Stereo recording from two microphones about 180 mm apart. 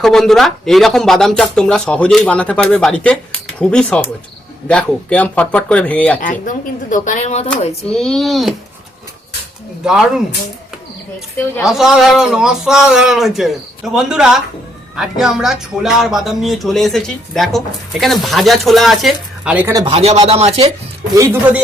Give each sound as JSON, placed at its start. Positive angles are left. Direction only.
{"t": 0.0, "sound": "speech", "side_deg": 0}
{"t": 6.1, "sound": "speech", "side_deg": 45}
{"t": 7.9, "sound": "speech", "side_deg": 5}
{"t": 9.8, "sound": "speech", "side_deg": -5}
{"t": 11.6, "sound": "speech", "side_deg": 0}
{"t": 19.9, "sound": "rub", "side_deg": -35}
{"t": 21.2, "sound": "speech", "side_deg": -15}